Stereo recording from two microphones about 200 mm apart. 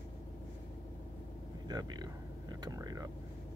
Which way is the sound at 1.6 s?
20° right (ahead or behind).